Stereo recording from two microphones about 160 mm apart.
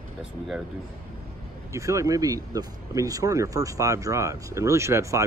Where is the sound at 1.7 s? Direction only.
20° right (ahead or behind).